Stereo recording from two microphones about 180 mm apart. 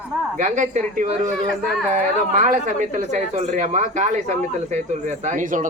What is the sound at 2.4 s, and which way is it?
Speech, 45° right (ahead or behind).